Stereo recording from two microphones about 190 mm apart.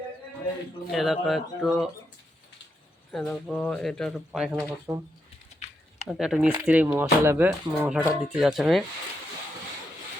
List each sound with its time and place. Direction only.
0.9 s speech: centre (ahead or behind)
3.1 s speech: centre (ahead or behind)
6.1 s speech: 5° right (ahead or behind)